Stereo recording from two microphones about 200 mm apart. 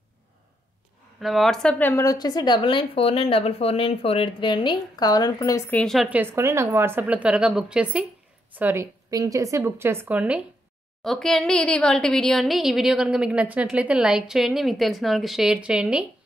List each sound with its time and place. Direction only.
1.2 s speech: centre (ahead or behind); by 5.8 s 15° left (ahead or behind)
5.8 s a woman's voice: centre (ahead or behind)